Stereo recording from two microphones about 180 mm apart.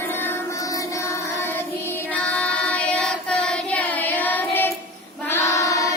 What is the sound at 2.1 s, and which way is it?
Child singing, 5° left (ahead or behind).